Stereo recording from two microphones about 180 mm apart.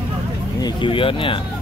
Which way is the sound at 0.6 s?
30° left (ahead or behind).